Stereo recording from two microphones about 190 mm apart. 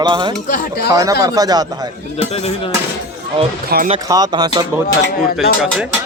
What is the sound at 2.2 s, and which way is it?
Speech, 35° left (ahead or behind).